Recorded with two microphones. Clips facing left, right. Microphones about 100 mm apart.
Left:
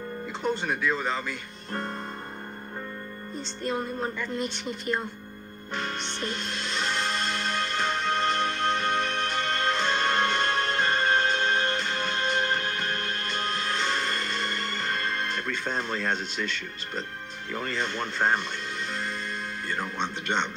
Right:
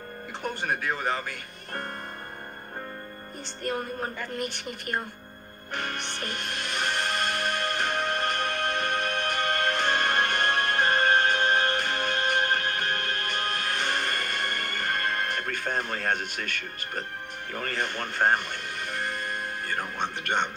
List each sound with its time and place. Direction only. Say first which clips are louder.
0.4 s speech: left 2 dB; 50° right (ahead or behind)
3.3 s speech: left 1 dB; 55° right (ahead or behind)
5.7 s music: even; 55° right (ahead or behind)
17.5 s speech: left 1 dB; 55° right (ahead or behind)